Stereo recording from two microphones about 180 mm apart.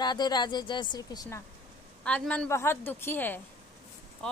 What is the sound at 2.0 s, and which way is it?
A woman's voice, 5° left (ahead or behind).